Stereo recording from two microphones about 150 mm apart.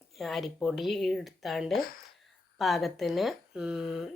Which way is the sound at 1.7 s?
75° left (ahead or behind).